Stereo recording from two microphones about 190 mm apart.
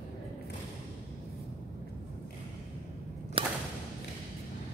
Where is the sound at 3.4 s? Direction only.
30° right (ahead or behind).